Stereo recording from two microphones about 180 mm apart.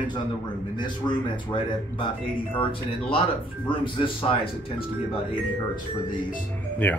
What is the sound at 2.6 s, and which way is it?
Speech, 30° left (ahead or behind).